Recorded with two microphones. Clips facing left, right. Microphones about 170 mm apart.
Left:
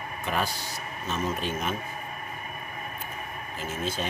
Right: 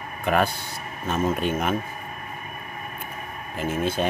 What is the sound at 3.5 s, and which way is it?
Speech, 55° right (ahead or behind).